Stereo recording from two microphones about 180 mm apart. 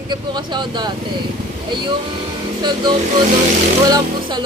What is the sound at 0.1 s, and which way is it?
Speech, 25° right (ahead or behind).